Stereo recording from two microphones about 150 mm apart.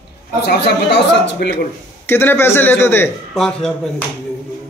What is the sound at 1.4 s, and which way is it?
Speech, 90° left.